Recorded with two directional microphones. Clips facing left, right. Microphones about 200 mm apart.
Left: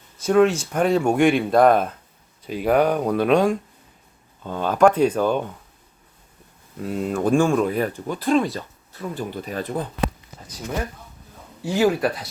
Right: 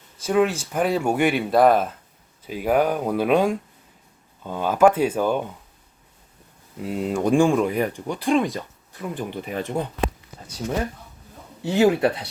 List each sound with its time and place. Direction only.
0.3 s speech: 5° right (ahead or behind)
6.7 s speech: 15° right (ahead or behind)
11.6 s speech: 25° right (ahead or behind)